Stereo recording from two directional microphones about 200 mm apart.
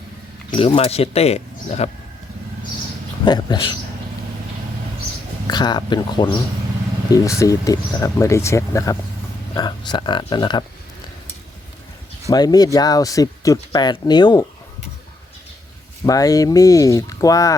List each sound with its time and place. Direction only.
0.5 s speech: 30° left (ahead or behind)
3.2 s speech: 20° left (ahead or behind)
5.5 s speech: 20° left (ahead or behind)
12.3 s speech: 20° left (ahead or behind)
16.0 s speech: 15° left (ahead or behind)